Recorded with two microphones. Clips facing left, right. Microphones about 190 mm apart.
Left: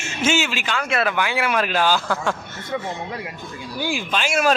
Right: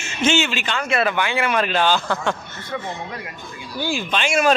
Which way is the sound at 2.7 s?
20° left (ahead or behind).